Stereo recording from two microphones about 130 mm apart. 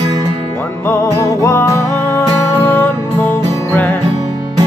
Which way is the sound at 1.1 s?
25° left (ahead or behind).